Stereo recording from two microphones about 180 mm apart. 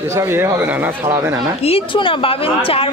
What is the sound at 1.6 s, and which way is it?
A woman's voice, 30° left (ahead or behind).